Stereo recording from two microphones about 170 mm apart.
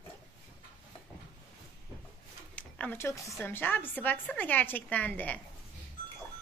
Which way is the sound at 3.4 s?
10° left (ahead or behind).